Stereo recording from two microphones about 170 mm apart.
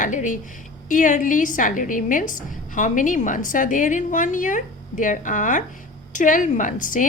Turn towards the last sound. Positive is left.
turn(degrees=50)  # may be behind; listen again after turning